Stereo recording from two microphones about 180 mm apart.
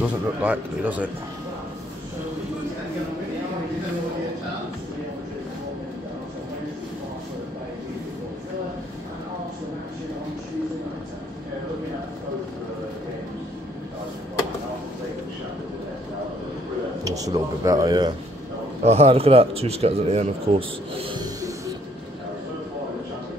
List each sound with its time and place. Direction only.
0.0 s speech: 10° right (ahead or behind)
17.0 s a man's voice: 20° right (ahead or behind)
18.9 s speech: 35° right (ahead or behind)